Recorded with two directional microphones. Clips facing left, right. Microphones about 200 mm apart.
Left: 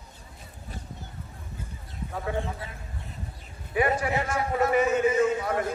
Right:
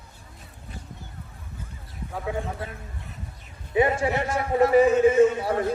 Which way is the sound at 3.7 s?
25° right (ahead or behind).